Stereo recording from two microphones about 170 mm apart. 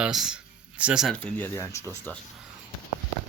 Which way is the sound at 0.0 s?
5° right (ahead or behind).